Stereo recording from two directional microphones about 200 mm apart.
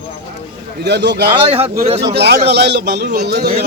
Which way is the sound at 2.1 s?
55° right (ahead or behind).